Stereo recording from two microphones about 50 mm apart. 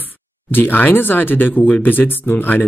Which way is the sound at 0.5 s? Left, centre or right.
Left.